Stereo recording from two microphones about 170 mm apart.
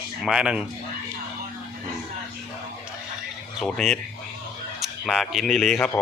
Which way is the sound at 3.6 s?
5° left (ahead or behind).